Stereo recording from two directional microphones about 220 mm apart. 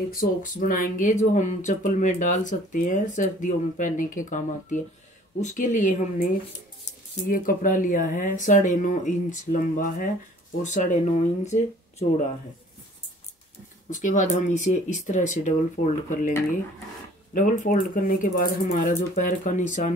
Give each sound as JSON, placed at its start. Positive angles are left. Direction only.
{"t": 0.1, "sound": "speech", "side_deg": 40}
{"t": 7.2, "sound": "speech", "side_deg": 40}
{"t": 13.8, "sound": "speech", "side_deg": 35}